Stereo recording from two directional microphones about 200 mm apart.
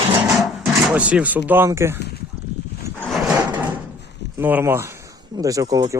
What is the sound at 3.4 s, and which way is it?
Wood, 15° right (ahead or behind).